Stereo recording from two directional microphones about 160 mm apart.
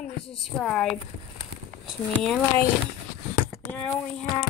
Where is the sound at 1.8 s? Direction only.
Centre (ahead or behind).